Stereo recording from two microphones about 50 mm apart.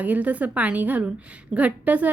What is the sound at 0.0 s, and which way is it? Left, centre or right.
A woman's voice, right.